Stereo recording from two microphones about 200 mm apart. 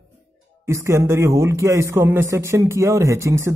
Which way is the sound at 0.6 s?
15° right (ahead or behind).